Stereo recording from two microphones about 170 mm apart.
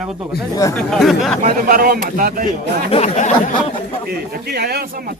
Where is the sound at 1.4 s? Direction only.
55° right (ahead or behind).